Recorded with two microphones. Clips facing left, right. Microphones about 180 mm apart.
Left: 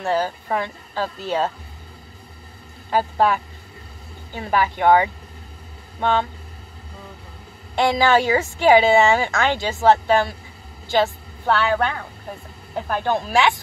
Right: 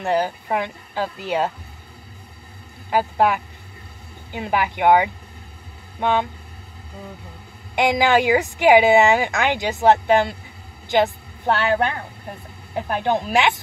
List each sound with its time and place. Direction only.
0.0 s a woman's voice: 15° right (ahead or behind)
2.9 s a woman's voice: 15° right (ahead or behind)
7.7 s a woman's voice: 15° right (ahead or behind)